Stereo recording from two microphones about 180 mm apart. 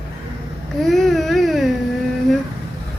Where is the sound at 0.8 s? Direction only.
Centre (ahead or behind).